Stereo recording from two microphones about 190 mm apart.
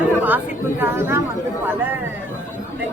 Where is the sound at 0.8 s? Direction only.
10° right (ahead or behind).